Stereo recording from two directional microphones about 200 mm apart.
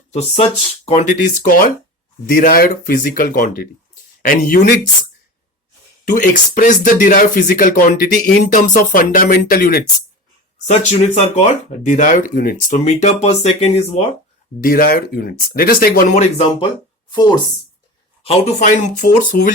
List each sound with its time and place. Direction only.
0.1 s speech: 35° left (ahead or behind); by 4.8 s 50° left (ahead or behind)
6.1 s speech: 40° left (ahead or behind)
10.7 s speech: 35° left (ahead or behind)
14.6 s speech: 45° left (ahead or behind)
17.1 s speech: 20° left (ahead or behind); by 19.2 s 40° left (ahead or behind)